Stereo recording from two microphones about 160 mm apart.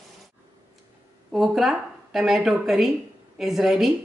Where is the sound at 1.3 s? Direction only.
Centre (ahead or behind).